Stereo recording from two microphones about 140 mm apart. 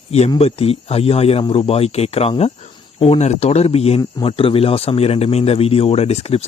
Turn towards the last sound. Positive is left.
turn(degrees=45)  # may be behind; listen again after turning